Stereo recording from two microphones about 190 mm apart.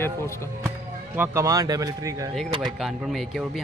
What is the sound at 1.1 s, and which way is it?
Speech, 15° right (ahead or behind).